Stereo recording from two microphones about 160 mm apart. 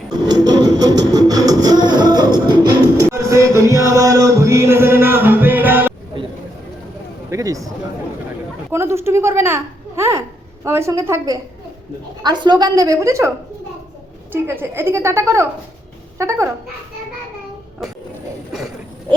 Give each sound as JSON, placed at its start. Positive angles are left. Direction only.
{"t": 0.1, "sound": "music", "side_deg": -25}
{"t": 7.3, "sound": "a sound", "side_deg": -20}
{"t": 8.7, "sound": "a child's voice", "side_deg": -15}
{"t": 12.2, "sound": "a woman's voice", "side_deg": -30}
{"t": 14.4, "sound": "a woman's voice", "side_deg": -15}